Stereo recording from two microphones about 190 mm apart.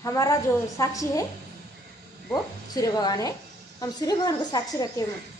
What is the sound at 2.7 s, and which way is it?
A woman's voice, 20° left (ahead or behind).